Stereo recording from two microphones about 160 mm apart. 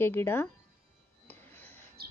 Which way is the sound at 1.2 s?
10° left (ahead or behind).